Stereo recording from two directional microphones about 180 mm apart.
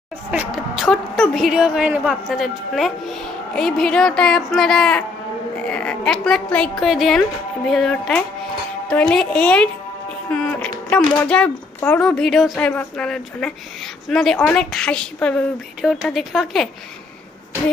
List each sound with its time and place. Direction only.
0.3 s a woman's voice: 5° right (ahead or behind)
10.3 s a sound: 5° left (ahead or behind)
10.9 s a woman's voice: 5° left (ahead or behind)